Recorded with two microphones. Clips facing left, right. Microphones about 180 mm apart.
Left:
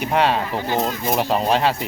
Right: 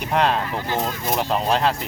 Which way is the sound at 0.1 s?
5° left (ahead or behind).